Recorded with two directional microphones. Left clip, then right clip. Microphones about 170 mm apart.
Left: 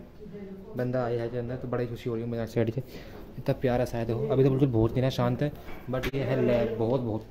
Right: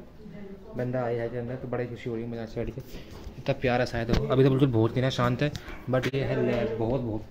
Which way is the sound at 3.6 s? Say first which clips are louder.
Right 1 dB; 20° left (ahead or behind).